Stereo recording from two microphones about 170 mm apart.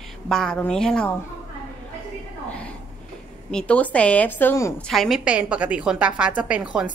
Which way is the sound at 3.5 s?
5° left (ahead or behind).